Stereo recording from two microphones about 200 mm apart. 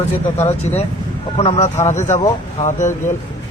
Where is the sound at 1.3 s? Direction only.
30° left (ahead or behind).